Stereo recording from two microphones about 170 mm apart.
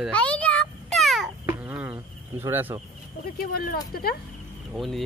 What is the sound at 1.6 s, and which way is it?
Speech, 10° right (ahead or behind).